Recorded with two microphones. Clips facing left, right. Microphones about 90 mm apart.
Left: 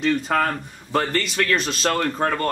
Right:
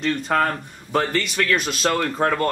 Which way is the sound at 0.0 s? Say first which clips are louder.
Even; centre (ahead or behind).